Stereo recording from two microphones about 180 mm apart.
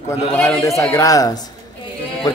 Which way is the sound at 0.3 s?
15° left (ahead or behind).